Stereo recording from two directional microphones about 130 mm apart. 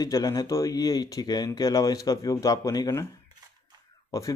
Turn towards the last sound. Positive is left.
turn(degrees=25)  # may be behind; listen again after turning